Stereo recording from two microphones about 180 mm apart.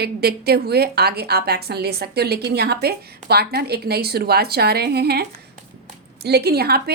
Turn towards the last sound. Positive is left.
turn(degrees=-60)  # may be behind; listen again after turning